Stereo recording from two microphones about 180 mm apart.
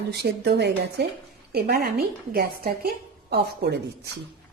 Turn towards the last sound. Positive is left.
turn(degrees=-65)  # may be behind; listen again after turning